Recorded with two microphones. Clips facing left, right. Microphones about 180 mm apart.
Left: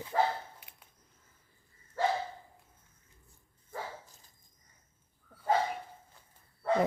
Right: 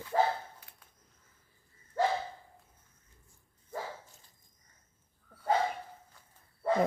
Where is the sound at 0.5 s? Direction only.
20° left (ahead or behind).